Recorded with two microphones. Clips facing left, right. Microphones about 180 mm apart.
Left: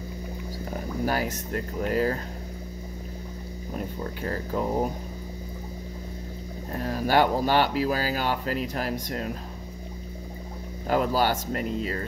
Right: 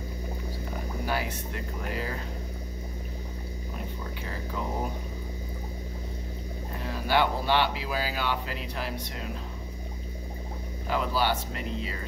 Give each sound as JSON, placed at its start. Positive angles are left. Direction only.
{"t": 1.0, "sound": "speech", "side_deg": 40}
{"t": 4.0, "sound": "speech", "side_deg": 45}
{"t": 6.7, "sound": "speech", "side_deg": 45}
{"t": 10.9, "sound": "speech", "side_deg": 45}